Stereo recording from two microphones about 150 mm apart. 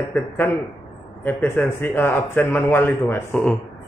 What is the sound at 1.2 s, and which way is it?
A man's voice, 10° left (ahead or behind).